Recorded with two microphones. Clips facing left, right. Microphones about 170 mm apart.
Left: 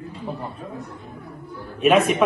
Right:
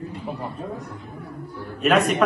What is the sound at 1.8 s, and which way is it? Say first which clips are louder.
Speech: left 2 dB; centre (ahead or behind).